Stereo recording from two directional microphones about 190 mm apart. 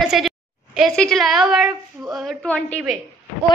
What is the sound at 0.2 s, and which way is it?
A woman's voice, centre (ahead or behind).